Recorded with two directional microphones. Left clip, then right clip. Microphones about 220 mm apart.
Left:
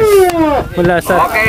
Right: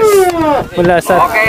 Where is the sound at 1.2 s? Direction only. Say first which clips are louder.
Right 1 dB; 45° left (ahead or behind).